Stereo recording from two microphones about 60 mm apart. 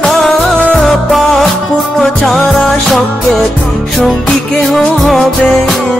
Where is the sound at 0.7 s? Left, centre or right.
Centre.